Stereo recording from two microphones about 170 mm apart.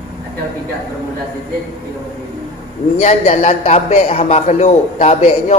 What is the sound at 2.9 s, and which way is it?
A man's voice, 40° left (ahead or behind).